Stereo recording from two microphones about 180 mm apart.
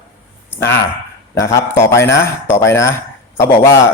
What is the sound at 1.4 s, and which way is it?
A man's voice, 15° left (ahead or behind).